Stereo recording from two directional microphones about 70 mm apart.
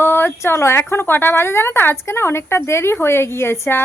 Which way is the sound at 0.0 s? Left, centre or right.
Left.